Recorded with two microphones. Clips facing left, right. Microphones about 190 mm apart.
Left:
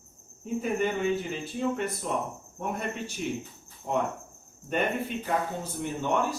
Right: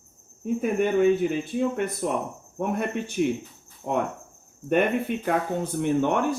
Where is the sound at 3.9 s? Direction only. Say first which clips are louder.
Right 3 dB; 70° right (ahead or behind).